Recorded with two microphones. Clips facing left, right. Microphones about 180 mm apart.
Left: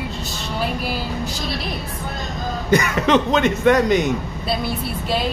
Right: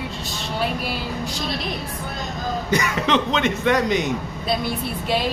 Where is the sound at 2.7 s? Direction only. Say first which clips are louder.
Left 5 dB; 55° left (ahead or behind).